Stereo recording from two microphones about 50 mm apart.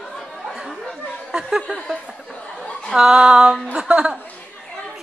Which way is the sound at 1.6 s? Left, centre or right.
Centre.